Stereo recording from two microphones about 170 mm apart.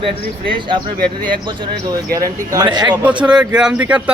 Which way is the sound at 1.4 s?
25° right (ahead or behind).